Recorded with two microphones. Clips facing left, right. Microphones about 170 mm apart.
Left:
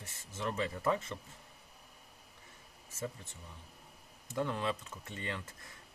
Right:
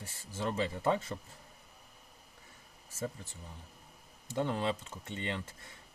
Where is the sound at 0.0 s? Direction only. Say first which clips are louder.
Right 2 dB; 30° right (ahead or behind).